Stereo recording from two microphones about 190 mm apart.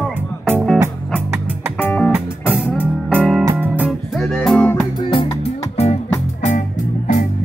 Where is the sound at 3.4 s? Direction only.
10° right (ahead or behind).